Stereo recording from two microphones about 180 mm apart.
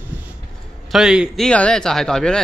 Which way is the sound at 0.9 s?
5° right (ahead or behind).